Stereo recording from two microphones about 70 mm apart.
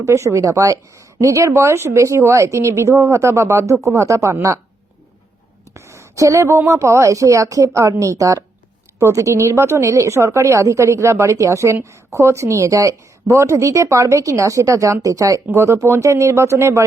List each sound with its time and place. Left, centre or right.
0.0 s a woman's voice: right
5.7 s a woman's voice: right
13.3 s a woman's voice: right